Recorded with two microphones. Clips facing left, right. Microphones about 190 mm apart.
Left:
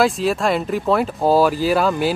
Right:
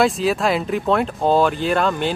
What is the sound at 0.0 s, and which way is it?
Speech, centre (ahead or behind).